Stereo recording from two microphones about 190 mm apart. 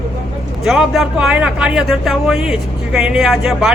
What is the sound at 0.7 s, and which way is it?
A man's voice, centre (ahead or behind).